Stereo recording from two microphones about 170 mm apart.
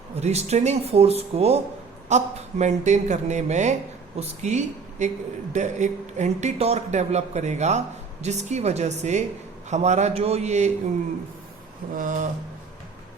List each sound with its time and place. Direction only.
0.2 s speech: 40° right (ahead or behind)
11.9 s speech: 50° right (ahead or behind)